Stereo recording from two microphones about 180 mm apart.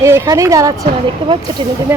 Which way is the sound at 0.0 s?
15° right (ahead or behind).